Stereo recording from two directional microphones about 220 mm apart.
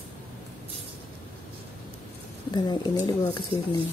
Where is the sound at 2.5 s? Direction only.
20° left (ahead or behind).